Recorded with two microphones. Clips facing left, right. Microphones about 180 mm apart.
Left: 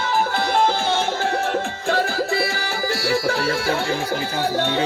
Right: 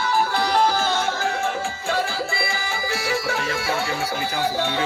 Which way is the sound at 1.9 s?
40° left (ahead or behind).